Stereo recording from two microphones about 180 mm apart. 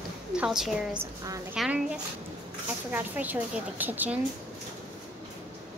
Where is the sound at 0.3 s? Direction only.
5° right (ahead or behind).